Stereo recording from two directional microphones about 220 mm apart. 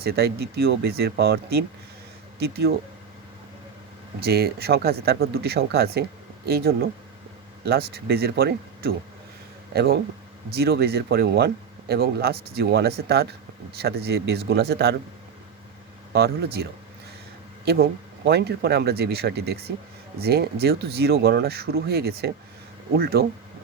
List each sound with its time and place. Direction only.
0.0 s speech: 45° right (ahead or behind)
4.2 s speech: 45° right (ahead or behind)
16.1 s speech: 45° right (ahead or behind)
17.7 s speech: 45° right (ahead or behind)